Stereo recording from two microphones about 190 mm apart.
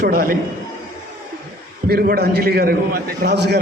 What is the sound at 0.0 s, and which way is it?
Speech, 50° right (ahead or behind).